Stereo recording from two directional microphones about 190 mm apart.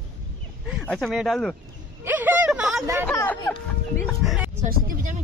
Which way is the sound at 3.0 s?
10° left (ahead or behind).